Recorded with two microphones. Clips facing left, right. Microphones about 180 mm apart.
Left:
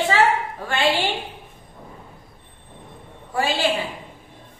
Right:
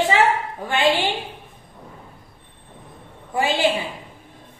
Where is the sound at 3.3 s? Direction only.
20° right (ahead or behind).